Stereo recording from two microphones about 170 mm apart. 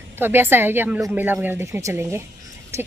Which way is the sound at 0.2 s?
15° right (ahead or behind).